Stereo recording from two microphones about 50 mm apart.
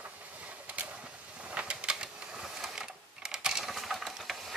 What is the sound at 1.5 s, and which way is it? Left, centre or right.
Typewriter, right.